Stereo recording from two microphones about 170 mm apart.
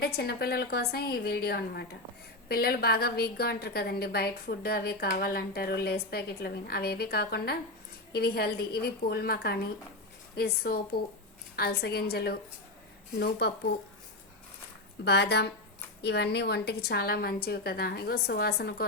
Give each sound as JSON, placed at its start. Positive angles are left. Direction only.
{"t": 0.0, "sound": "a woman's voice", "side_deg": 70}
{"t": 15.0, "sound": "a woman's voice", "side_deg": 80}